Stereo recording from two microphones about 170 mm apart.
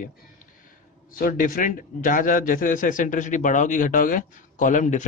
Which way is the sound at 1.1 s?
55° left (ahead or behind).